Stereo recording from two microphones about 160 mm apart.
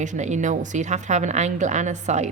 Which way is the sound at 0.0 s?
50° right (ahead or behind).